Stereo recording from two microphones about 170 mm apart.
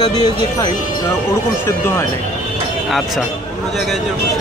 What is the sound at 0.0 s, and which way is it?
Speech, 25° left (ahead or behind).